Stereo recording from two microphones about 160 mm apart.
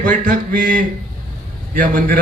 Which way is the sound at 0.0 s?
60° right (ahead or behind).